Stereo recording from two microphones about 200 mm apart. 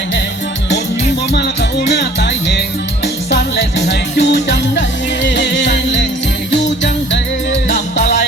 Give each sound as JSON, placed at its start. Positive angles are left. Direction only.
{"t": 2.0, "sound": "music", "side_deg": 60}